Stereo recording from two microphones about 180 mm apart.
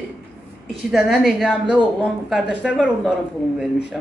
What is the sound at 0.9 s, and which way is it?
A woman's voice, centre (ahead or behind).